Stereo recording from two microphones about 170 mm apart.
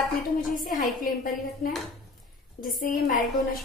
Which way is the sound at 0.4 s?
55° left (ahead or behind).